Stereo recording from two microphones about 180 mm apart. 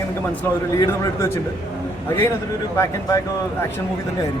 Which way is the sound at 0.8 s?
15° left (ahead or behind).